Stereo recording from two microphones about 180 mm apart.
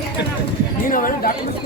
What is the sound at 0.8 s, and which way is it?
Clip-clop, 50° left (ahead or behind).